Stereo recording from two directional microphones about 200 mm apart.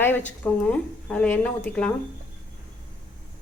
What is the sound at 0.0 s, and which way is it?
A woman's voice, 10° left (ahead or behind).